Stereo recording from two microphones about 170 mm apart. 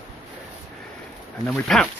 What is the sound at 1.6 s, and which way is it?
Speech, centre (ahead or behind).